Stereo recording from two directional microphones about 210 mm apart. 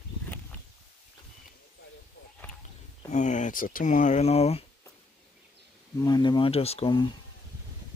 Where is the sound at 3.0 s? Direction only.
35° left (ahead or behind).